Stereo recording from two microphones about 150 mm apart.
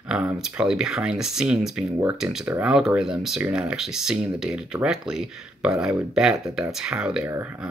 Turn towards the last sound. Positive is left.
turn(degrees=-5)  # may be behind; listen again after turning